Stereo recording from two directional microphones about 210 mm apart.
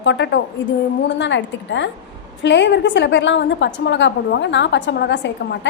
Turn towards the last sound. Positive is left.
turn(degrees=55)  # may be behind; listen again after turning